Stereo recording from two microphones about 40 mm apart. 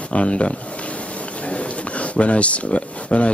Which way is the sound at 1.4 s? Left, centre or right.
Left.